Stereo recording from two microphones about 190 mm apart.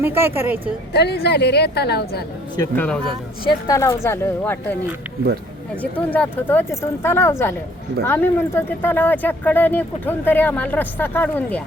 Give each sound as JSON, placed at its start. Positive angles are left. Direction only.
{"t": 0.0, "sound": "a woman's voice", "side_deg": -10}
{"t": 0.9, "sound": "a woman's voice", "side_deg": 60}
{"t": 2.6, "sound": "speech", "side_deg": 10}
{"t": 3.4, "sound": "speech", "side_deg": 15}
{"t": 5.8, "sound": "speech", "side_deg": 10}